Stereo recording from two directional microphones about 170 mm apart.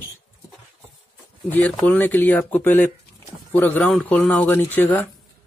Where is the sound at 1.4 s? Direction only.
10° left (ahead or behind).